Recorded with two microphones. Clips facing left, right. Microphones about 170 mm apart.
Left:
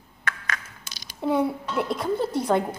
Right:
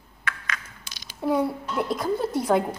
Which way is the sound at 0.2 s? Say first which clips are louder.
Left 1 dB; 45° left (ahead or behind).